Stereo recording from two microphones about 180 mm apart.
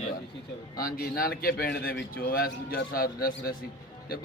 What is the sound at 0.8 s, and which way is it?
A man's voice, 55° left (ahead or behind).